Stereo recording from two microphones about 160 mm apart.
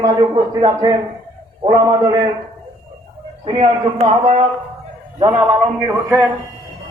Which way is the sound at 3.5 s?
30° right (ahead or behind).